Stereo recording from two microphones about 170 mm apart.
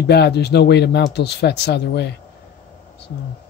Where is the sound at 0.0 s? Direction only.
75° left (ahead or behind).